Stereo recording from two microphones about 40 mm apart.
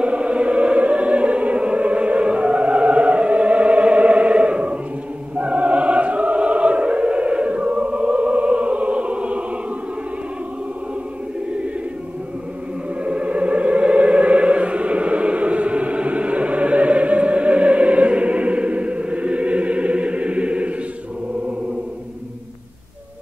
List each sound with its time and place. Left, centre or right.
0.0 s music: right
5.4 s choir: right
13.0 s music: right